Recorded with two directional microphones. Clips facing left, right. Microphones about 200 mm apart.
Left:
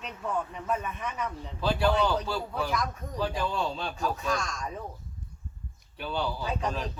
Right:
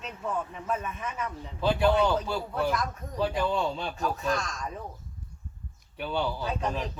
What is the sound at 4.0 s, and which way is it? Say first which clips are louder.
Speech: even; centre (ahead or behind).